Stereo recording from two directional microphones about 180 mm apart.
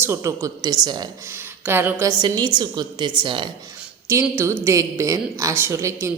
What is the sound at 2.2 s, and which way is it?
A woman's voice, 25° right (ahead or behind).